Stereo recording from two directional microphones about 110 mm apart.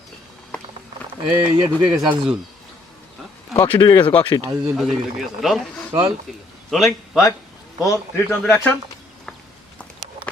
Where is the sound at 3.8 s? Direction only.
45° left (ahead or behind).